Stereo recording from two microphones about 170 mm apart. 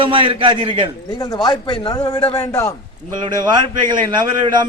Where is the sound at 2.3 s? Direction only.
15° left (ahead or behind).